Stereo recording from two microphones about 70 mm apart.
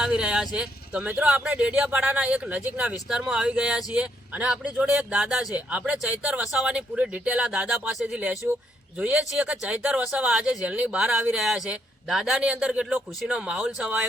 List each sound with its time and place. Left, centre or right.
0.0 s speech: centre
4.8 s music: right
5.5 s speech: centre
12.4 s speech: centre